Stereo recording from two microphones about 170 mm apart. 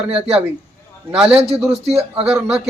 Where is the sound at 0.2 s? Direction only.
35° right (ahead or behind).